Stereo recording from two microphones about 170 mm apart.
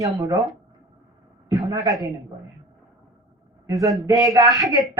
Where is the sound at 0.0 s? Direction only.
20° right (ahead or behind).